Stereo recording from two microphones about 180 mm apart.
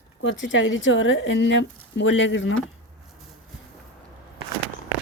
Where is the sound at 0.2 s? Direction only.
90° left.